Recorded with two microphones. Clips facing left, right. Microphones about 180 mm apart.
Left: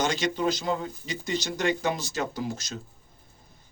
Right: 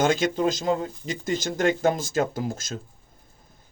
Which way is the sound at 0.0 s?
50° right (ahead or behind).